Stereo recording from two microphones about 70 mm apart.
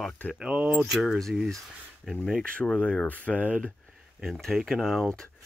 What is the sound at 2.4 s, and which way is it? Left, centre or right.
Speech, centre.